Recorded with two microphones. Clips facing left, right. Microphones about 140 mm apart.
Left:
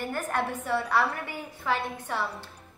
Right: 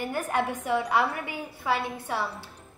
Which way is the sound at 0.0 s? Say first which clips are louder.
Right 2 dB; 10° right (ahead or behind).